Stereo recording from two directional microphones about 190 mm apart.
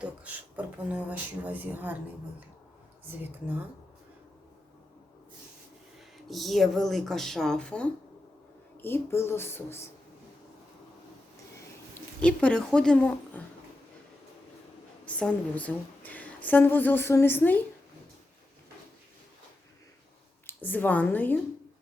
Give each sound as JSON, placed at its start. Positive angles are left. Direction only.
{"t": 0.0, "sound": "speech", "side_deg": -10}
{"t": 6.2, "sound": "a woman's voice", "side_deg": 0}
{"t": 11.9, "sound": "speech", "side_deg": 5}
{"t": 15.0, "sound": "a woman's voice", "side_deg": 5}
{"t": 20.5, "sound": "a woman's voice", "side_deg": 10}